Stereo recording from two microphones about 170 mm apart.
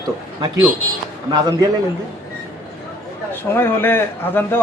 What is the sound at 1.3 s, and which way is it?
Speech, 20° right (ahead or behind).